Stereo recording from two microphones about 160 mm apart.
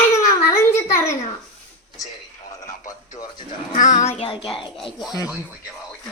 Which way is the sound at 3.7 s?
50° left (ahead or behind).